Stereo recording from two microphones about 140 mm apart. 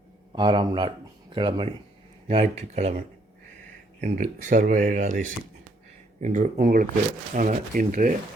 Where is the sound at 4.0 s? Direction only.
65° right (ahead or behind); by 6.9 s 90° right.